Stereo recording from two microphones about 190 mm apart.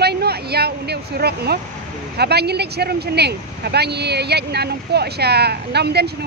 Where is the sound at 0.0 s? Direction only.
60° right (ahead or behind).